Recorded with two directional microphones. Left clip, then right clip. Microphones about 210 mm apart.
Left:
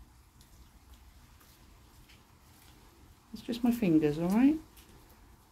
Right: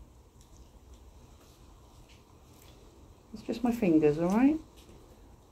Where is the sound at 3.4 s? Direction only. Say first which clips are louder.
Right 2 dB; 45° left (ahead or behind).